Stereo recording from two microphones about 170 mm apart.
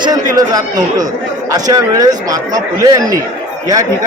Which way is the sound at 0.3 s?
20° right (ahead or behind).